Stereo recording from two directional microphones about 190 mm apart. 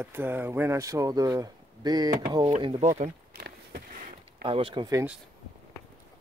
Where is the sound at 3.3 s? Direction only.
55° right (ahead or behind).